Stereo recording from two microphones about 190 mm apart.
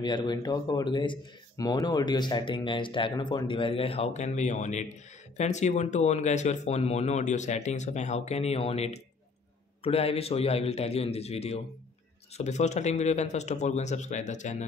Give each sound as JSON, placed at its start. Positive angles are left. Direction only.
{"t": 0.0, "sound": "speech", "side_deg": 20}